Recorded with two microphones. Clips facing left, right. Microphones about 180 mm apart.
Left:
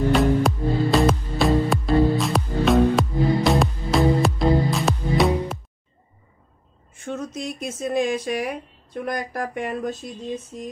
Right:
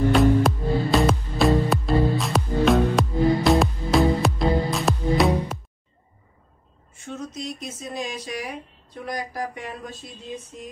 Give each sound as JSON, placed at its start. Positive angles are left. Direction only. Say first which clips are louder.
{"t": 0.1, "sound": "music", "louder": "even", "side_deg": 0}
{"t": 7.1, "sound": "a sound", "louder": "left 3 dB", "side_deg": 50}
{"t": 9.0, "sound": "speech", "louder": "left 2 dB", "side_deg": 55}